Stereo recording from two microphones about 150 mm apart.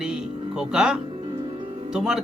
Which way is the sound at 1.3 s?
30° right (ahead or behind).